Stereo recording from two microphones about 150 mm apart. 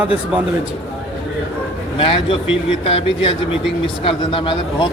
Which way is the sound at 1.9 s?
35° left (ahead or behind).